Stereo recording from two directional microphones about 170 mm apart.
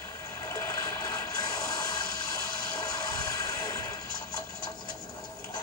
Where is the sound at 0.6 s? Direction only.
20° left (ahead or behind).